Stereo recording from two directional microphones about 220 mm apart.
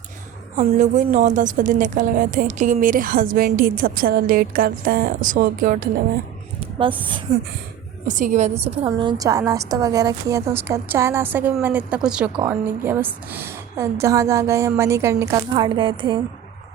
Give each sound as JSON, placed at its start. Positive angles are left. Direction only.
{"t": 0.5, "sound": "a woman's voice", "side_deg": -30}
{"t": 6.6, "sound": "a sound", "side_deg": -25}
{"t": 8.0, "sound": "a woman's voice", "side_deg": -35}